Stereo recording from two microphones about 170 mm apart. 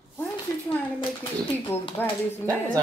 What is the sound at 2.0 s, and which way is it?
Speech, 10° left (ahead or behind).